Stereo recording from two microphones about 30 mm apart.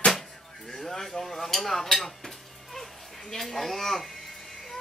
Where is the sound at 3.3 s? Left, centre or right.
Centre.